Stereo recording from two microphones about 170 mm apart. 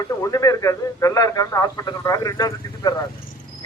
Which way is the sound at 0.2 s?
20° left (ahead or behind).